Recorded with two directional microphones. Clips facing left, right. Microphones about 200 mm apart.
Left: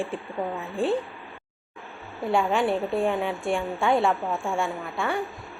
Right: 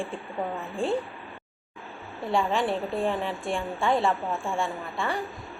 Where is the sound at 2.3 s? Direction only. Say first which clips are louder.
Left 2 dB; centre (ahead or behind).